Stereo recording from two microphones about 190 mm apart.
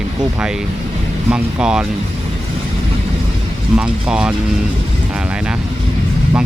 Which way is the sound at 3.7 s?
5° right (ahead or behind).